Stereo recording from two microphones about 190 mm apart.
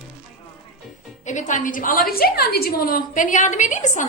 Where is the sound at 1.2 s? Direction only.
40° left (ahead or behind).